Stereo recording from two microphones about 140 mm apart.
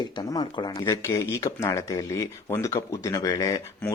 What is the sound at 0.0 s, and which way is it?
Speech, 30° left (ahead or behind).